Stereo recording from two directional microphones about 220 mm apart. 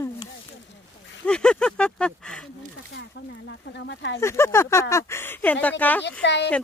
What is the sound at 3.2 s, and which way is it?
Speech, 55° left (ahead or behind).